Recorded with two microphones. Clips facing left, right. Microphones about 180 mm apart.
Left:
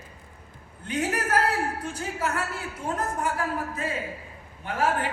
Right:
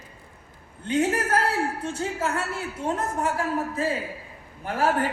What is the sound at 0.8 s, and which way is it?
A man's voice, 25° right (ahead or behind).